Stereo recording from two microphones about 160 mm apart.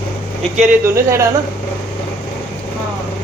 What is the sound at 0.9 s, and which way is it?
Speech, 15° right (ahead or behind).